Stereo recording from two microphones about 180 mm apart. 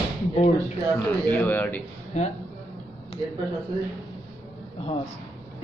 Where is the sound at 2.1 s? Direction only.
40° left (ahead or behind).